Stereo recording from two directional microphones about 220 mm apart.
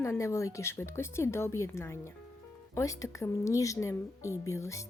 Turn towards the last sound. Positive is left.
turn(degrees=15)  # may be behind; listen again after turning